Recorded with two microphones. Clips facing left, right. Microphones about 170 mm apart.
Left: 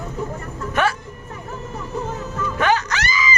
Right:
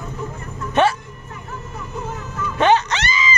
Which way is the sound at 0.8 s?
25° right (ahead or behind).